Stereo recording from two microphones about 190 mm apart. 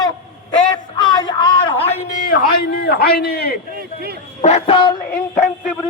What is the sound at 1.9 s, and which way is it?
A man's voice, 45° left (ahead or behind).